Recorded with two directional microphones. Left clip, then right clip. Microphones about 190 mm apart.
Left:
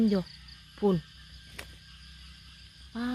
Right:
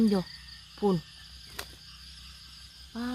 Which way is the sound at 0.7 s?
Centre (ahead or behind).